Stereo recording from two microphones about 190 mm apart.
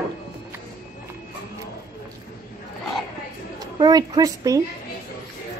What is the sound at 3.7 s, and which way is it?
Speech, 20° right (ahead or behind).